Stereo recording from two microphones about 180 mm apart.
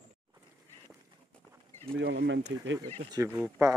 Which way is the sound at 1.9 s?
70° right (ahead or behind).